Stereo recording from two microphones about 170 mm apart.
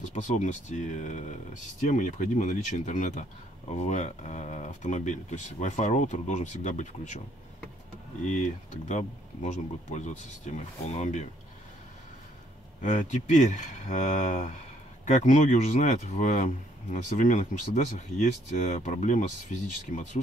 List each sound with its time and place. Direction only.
0.0 s speech: 45° left (ahead or behind)
8.8 s speech: 45° left (ahead or behind)
12.8 s speech: 45° left (ahead or behind)